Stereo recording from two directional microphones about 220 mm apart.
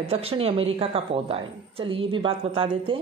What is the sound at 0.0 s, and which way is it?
A woman's voice, 25° right (ahead or behind).